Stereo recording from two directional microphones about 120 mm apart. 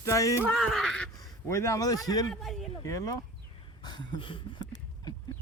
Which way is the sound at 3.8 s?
40° left (ahead or behind).